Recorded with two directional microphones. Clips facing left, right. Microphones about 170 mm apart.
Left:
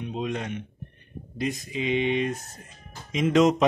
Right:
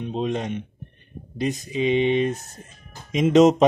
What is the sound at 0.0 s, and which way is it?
Speech, 25° right (ahead or behind).